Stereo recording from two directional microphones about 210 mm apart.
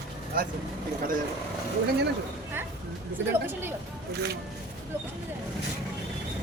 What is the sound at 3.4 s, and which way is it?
Speech, 10° right (ahead or behind).